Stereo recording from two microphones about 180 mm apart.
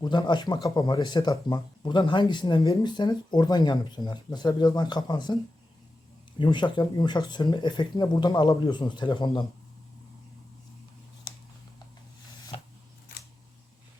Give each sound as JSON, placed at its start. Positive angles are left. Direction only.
{"t": 0.0, "sound": "speech", "side_deg": 25}
{"t": 6.4, "sound": "speech", "side_deg": 25}